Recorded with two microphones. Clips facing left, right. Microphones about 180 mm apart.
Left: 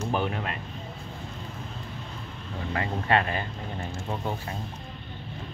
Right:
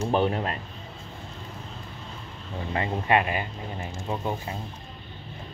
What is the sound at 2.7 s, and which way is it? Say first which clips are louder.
Speech: right 2 dB; 20° right (ahead or behind).